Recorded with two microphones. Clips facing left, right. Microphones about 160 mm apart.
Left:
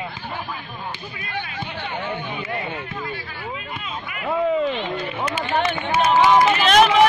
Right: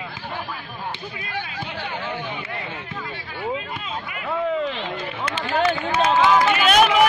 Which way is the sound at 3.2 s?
25° right (ahead or behind).